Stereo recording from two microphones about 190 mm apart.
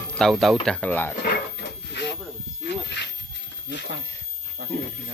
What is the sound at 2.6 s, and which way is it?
Snake, 65° left (ahead or behind).